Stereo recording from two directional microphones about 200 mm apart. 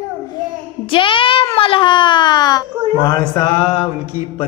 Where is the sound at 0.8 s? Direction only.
25° left (ahead or behind).